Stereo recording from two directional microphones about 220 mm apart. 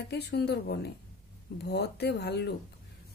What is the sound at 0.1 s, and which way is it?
Speech, 45° left (ahead or behind).